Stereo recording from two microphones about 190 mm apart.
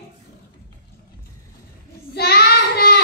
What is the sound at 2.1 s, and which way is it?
Child singing, 55° left (ahead or behind).